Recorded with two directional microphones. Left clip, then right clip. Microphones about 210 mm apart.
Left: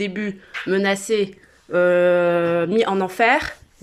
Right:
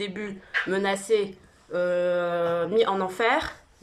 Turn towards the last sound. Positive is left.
turn(degrees=30)  # may be behind; listen again after turning